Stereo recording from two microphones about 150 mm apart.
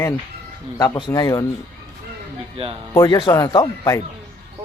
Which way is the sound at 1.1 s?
25° left (ahead or behind).